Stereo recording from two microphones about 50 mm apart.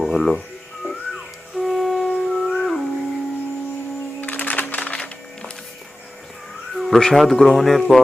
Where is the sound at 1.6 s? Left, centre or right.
Centre.